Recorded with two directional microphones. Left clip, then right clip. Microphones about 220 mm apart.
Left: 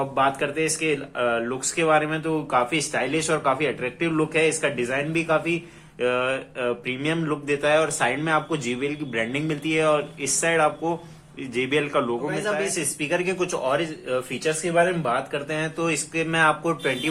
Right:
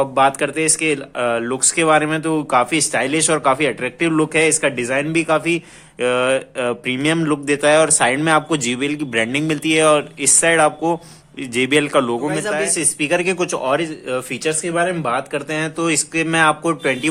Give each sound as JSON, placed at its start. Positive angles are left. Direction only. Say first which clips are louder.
{"t": 0.2, "sound": "a man's voice", "louder": "right 5 dB", "side_deg": -50}